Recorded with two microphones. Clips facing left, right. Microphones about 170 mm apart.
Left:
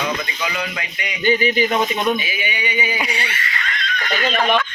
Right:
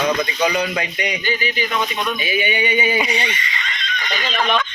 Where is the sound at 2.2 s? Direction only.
25° right (ahead or behind).